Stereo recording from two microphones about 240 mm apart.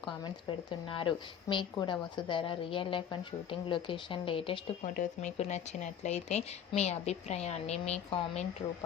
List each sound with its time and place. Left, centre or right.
0.7 s a woman's voice: left